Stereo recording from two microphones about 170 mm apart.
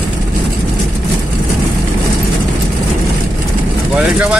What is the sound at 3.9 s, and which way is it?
Speech, 5° right (ahead or behind).